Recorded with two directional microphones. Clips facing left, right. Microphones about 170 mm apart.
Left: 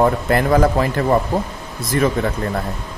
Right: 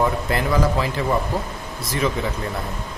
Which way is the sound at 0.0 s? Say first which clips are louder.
Left 5 dB; 55° left (ahead or behind).